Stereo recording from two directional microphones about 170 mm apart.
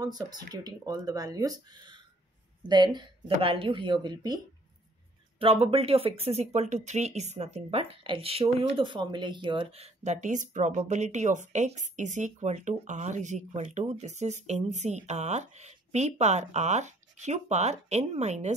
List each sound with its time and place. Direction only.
0.0 s speech: 25° right (ahead or behind)
5.4 s speech: 35° right (ahead or behind)